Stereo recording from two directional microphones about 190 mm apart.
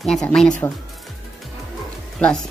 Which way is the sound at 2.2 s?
5° left (ahead or behind).